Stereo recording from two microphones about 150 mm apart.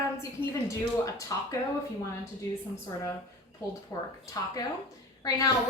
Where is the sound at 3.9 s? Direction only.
20° left (ahead or behind).